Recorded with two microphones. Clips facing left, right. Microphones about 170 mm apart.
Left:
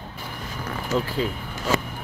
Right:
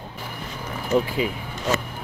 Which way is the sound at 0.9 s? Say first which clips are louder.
Right 3 dB; 10° right (ahead or behind).